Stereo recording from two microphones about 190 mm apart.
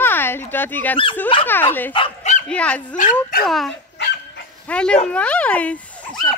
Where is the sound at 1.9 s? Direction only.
30° left (ahead or behind).